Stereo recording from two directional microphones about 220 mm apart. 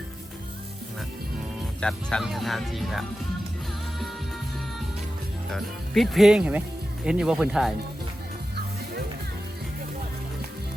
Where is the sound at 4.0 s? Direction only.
Centre (ahead or behind).